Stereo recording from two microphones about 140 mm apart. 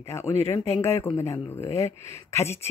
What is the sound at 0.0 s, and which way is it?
Speech, 20° left (ahead or behind).